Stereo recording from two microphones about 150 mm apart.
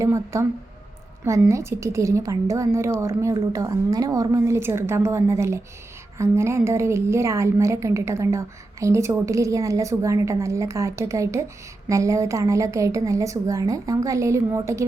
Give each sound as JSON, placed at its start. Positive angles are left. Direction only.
{"t": 0.0, "sound": "a woman's voice", "side_deg": -20}